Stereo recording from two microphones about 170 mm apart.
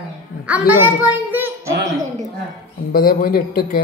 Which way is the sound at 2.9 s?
60° left (ahead or behind).